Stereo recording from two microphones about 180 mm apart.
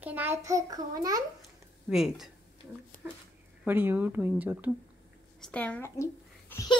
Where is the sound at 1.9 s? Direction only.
Centre (ahead or behind).